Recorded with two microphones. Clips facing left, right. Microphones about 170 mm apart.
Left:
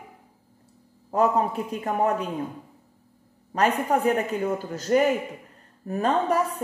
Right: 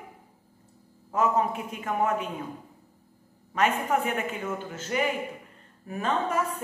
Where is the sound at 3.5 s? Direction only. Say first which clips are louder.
Left 3 dB; 35° left (ahead or behind).